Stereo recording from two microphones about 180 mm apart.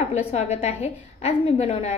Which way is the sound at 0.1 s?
35° left (ahead or behind).